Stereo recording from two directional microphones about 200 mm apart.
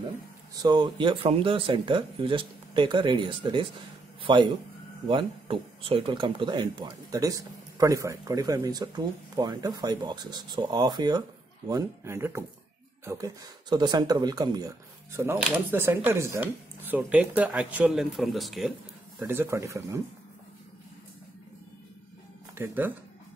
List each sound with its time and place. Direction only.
0.6 s speech: 20° right (ahead or behind)
4.2 s a sound: 25° right (ahead or behind)
5.0 s speech: 25° right (ahead or behind)
15.1 s speech: 10° right (ahead or behind)
19.2 s speech: 10° right (ahead or behind)
22.6 s speech: 10° right (ahead or behind)